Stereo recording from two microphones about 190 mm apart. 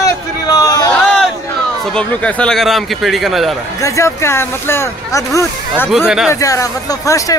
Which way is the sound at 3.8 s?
15° left (ahead or behind).